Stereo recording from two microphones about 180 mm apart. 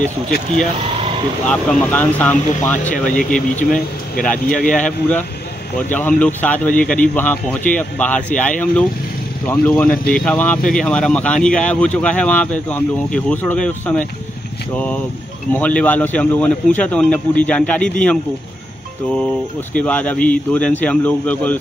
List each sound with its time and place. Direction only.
0.7 s speech: 30° right (ahead or behind)
1.5 s speech: 5° left (ahead or behind)
2.8 s speech: 45° left (ahead or behind)
3.7 s speech: 5° left (ahead or behind)
4.5 s speech: 50° left (ahead or behind)
4.7 s speech: 5° left (ahead or behind)
19.7 s speech: 5° left (ahead or behind)